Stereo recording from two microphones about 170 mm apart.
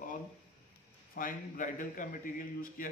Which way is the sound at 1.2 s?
50° left (ahead or behind).